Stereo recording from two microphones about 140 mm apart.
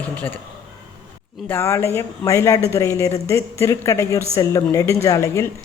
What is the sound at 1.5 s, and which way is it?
A woman's voice, 15° left (ahead or behind).